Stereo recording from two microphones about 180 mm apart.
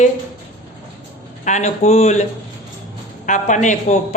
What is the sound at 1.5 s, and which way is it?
Speech, 40° left (ahead or behind).